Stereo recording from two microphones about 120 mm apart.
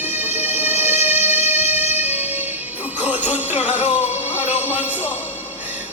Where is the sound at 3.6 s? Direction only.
80° left.